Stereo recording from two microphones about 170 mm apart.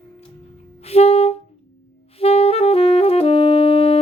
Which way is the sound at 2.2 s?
35° left (ahead or behind).